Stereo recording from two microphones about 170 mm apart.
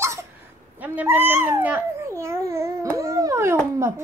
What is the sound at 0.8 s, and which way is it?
Speech, 10° right (ahead or behind).